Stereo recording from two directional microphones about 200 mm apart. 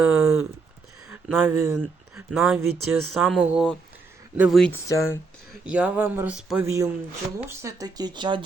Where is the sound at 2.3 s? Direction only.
Centre (ahead or behind).